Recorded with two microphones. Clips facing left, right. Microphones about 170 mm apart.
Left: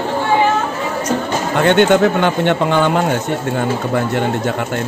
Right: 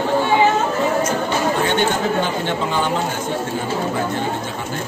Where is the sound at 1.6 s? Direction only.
70° left (ahead or behind).